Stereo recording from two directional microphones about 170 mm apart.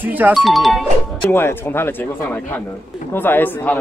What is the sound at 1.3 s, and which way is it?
Speech, 15° left (ahead or behind).